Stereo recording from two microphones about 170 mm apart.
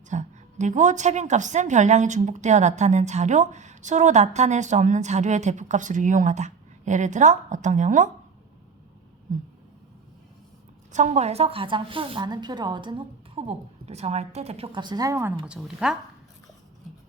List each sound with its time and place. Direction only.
0.1 s a woman's voice: 45° right (ahead or behind)
10.9 s a woman's voice: 45° right (ahead or behind); by 15.3 s 20° right (ahead or behind)
15.4 s speech: 5° right (ahead or behind)